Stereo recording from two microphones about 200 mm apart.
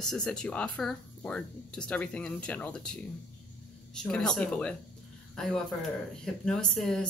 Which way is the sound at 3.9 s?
5° left (ahead or behind).